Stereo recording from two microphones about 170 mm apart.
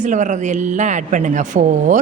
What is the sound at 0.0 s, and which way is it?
Speech, 45° right (ahead or behind).